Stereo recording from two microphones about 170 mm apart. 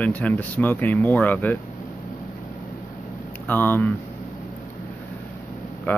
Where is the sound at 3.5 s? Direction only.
10° left (ahead or behind).